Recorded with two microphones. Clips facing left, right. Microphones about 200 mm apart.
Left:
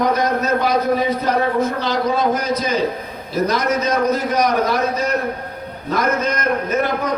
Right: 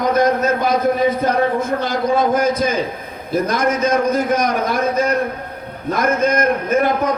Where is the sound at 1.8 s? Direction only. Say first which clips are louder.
Right 1 dB; 50° right (ahead or behind).